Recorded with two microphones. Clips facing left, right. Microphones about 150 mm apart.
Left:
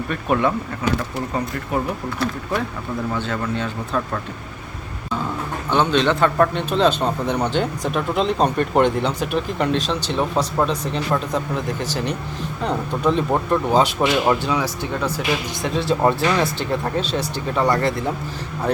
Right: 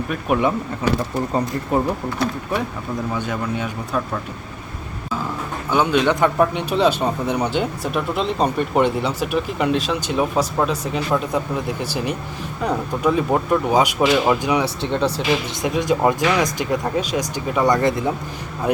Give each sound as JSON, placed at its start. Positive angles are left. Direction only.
{"t": 0.1, "sound": "speech", "side_deg": -10}
{"t": 2.2, "sound": "speech", "side_deg": -15}
{"t": 5.7, "sound": "speech", "side_deg": -10}
{"t": 14.6, "sound": "speech", "side_deg": -30}
{"t": 15.6, "sound": "speech", "side_deg": -15}